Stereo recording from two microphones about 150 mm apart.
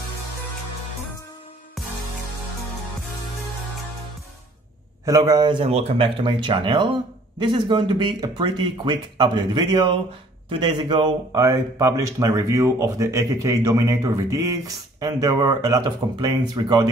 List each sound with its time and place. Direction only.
1.8 s music: centre (ahead or behind)
5.0 s speech: 25° right (ahead or behind)
5.7 s speech: 45° right (ahead or behind)
6.2 s speech: 30° right (ahead or behind)